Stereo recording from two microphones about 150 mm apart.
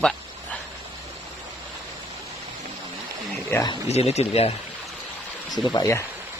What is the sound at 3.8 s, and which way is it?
Speech, 45° left (ahead or behind).